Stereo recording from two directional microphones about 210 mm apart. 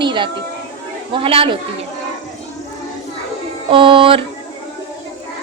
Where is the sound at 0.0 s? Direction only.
20° right (ahead or behind).